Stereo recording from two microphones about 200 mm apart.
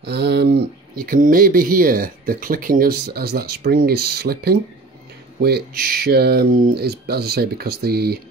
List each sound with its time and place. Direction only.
0.0 s speech: 55° right (ahead or behind)